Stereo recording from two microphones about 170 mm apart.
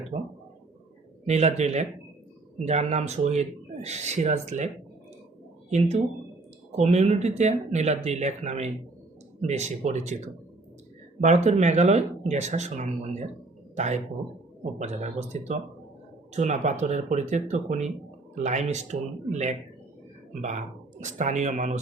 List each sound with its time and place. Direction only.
0.1 s speech: 50° right (ahead or behind)
6.7 s speech: 40° right (ahead or behind)
21.0 s speech: 45° right (ahead or behind)